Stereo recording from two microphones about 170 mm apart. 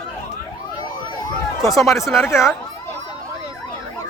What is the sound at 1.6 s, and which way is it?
Speech, centre (ahead or behind).